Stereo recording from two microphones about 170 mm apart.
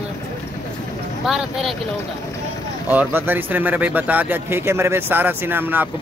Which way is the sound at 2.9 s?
10° right (ahead or behind).